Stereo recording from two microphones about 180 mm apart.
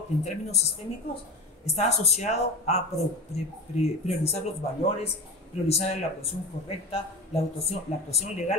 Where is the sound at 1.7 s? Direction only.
40° left (ahead or behind).